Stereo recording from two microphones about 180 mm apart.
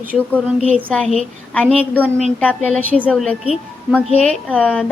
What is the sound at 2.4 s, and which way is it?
A woman's voice, 10° left (ahead or behind).